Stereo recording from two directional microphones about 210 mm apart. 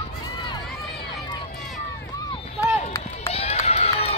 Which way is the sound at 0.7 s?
Centre (ahead or behind).